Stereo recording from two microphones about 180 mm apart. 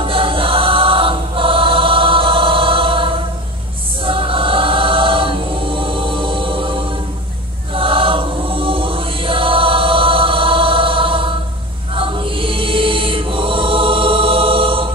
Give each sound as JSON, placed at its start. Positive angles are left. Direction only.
{"t": 0.0, "sound": "choir", "side_deg": -30}
{"t": 11.9, "sound": "music", "side_deg": -30}